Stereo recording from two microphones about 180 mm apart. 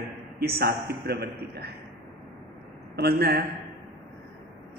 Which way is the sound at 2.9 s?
60° right (ahead or behind).